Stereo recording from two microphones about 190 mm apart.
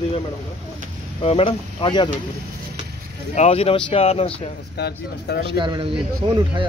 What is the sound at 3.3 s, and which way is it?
Speech, 30° left (ahead or behind).